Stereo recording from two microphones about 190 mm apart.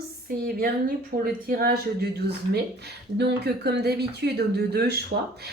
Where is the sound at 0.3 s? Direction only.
50° right (ahead or behind).